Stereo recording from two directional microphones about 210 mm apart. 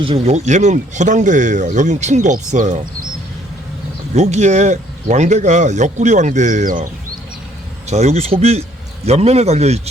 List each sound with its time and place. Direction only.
0.0 s speech: 30° right (ahead or behind)
4.1 s speech: 35° right (ahead or behind)
7.9 s speech: 35° right (ahead or behind)